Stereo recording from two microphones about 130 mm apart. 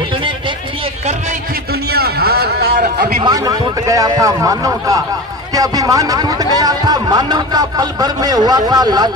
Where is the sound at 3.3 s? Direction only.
30° right (ahead or behind).